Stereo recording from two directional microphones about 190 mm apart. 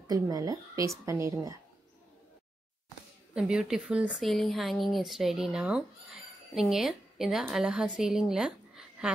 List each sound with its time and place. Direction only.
0.0 s a woman's voice: 20° right (ahead or behind)
3.3 s a woman's voice: 5° right (ahead or behind)